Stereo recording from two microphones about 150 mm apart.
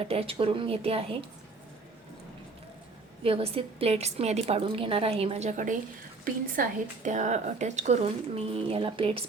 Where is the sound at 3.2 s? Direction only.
40° right (ahead or behind).